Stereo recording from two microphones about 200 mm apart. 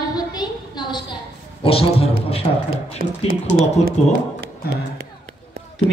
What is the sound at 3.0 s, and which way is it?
Speech, 45° right (ahead or behind).